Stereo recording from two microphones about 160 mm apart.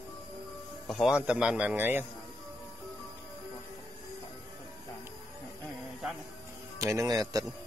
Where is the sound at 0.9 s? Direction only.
Centre (ahead or behind).